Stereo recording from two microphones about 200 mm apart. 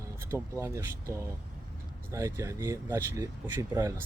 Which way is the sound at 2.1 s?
15° right (ahead or behind).